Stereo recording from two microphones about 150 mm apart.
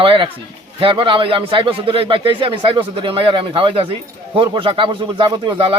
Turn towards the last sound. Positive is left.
turn(degrees=-35)  # may be behind; listen again after turning